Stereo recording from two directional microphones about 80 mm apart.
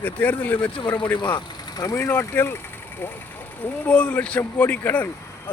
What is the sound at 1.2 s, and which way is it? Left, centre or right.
Speech, left.